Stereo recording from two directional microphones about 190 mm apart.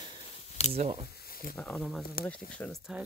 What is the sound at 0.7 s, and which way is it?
Speech, 35° right (ahead or behind).